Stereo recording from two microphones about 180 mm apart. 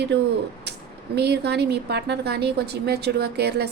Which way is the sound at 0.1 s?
65° right (ahead or behind).